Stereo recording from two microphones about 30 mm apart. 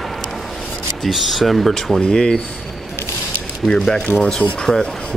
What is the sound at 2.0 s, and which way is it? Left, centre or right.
Speech, left.